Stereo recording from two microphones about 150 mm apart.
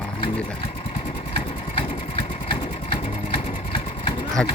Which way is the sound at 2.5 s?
35° left (ahead or behind).